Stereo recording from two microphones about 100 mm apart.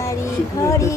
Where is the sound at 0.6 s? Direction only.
30° left (ahead or behind).